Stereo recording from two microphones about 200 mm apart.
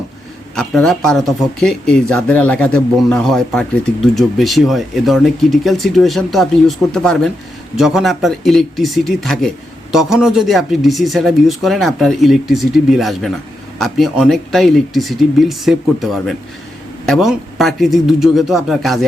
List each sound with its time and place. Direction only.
0.5 s speech: 5° left (ahead or behind)